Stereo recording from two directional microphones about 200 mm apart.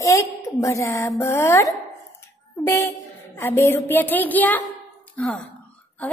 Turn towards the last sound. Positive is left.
turn(degrees=5)  # may be behind; listen again after turning